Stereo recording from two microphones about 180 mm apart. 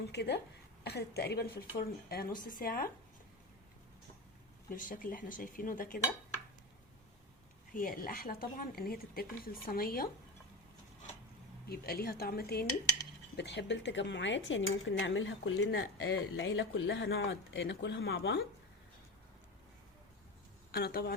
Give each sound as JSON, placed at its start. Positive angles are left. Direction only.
{"t": 0.0, "sound": "a woman's voice", "side_deg": 70}
{"t": 4.7, "sound": "a woman's voice", "side_deg": 50}
{"t": 7.7, "sound": "a woman's voice", "side_deg": 50}
{"t": 11.7, "sound": "a woman's voice", "side_deg": 60}
{"t": 13.3, "sound": "speech", "side_deg": 70}
{"t": 20.7, "sound": "a woman's voice", "side_deg": 60}